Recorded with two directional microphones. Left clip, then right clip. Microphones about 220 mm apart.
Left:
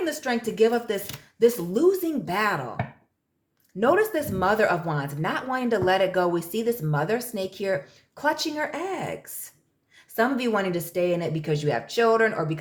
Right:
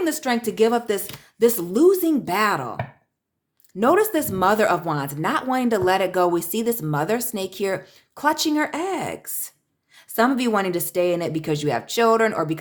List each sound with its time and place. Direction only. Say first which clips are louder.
0.0 s speech: right 4 dB; 40° right (ahead or behind)
3.8 s speech: right 3 dB; 35° right (ahead or behind)
10.2 s speech: right 4 dB; 35° right (ahead or behind)